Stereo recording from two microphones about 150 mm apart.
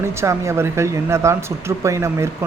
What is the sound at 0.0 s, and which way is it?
Speech, 20° right (ahead or behind).